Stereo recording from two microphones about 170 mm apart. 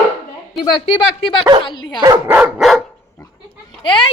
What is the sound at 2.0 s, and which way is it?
Speech, 25° right (ahead or behind).